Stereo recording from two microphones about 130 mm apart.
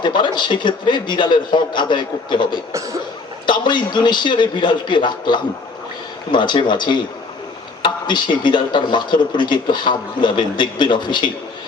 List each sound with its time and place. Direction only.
0.0 s speech: 35° left (ahead or behind)